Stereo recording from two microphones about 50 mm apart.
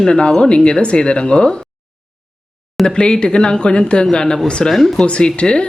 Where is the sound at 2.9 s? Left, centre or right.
Centre.